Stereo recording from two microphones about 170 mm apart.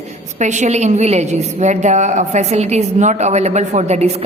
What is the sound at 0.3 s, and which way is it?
A woman's voice, 45° right (ahead or behind).